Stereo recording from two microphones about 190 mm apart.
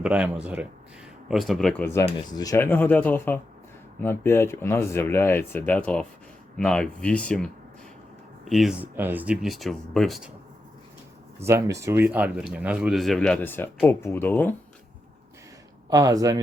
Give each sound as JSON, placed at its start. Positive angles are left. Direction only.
{"t": 0.0, "sound": "speech", "side_deg": -5}
{"t": 1.8, "sound": "speech", "side_deg": 15}
{"t": 11.3, "sound": "speech", "side_deg": -15}
{"t": 15.9, "sound": "speech", "side_deg": -20}